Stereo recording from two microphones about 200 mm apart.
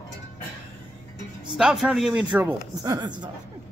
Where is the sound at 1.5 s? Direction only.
5° right (ahead or behind).